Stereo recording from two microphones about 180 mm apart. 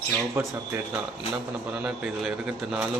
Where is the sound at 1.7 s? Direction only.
5° right (ahead or behind).